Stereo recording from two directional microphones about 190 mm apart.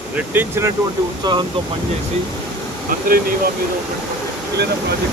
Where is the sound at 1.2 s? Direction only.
25° right (ahead or behind).